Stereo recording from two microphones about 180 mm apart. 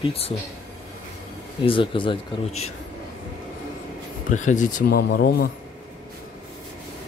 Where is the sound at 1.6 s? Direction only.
30° left (ahead or behind).